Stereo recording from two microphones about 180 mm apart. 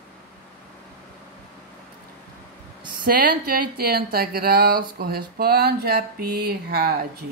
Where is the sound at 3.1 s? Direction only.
55° right (ahead or behind).